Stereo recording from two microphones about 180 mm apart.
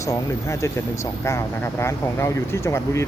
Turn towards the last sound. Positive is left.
turn(degrees=15)  # may be behind; listen again after turning